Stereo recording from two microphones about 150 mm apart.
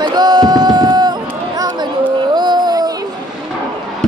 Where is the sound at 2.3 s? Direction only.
30° right (ahead or behind).